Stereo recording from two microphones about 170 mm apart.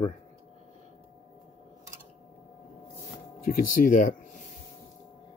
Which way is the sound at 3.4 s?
50° left (ahead or behind).